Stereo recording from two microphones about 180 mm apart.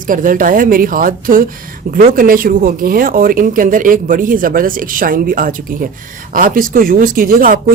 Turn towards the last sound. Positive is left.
turn(degrees=-50)  # may be behind; listen again after turning